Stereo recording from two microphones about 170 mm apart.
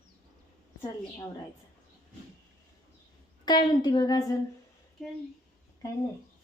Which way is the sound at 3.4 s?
25° left (ahead or behind).